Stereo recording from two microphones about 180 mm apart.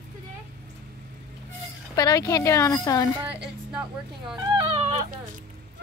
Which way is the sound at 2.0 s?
20° left (ahead or behind).